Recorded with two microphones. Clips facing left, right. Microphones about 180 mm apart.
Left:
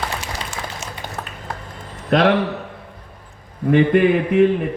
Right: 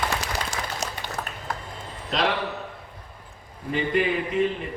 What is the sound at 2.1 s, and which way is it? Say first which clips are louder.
Speech: left 10 dB; 55° left (ahead or behind).